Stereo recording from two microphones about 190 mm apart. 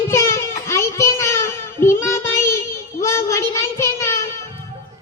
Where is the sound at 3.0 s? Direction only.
15° left (ahead or behind).